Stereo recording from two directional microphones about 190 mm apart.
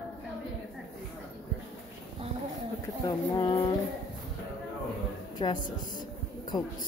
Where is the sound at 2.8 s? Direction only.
20° left (ahead or behind).